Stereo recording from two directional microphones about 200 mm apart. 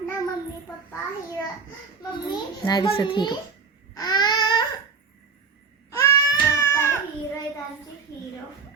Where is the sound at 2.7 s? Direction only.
20° left (ahead or behind).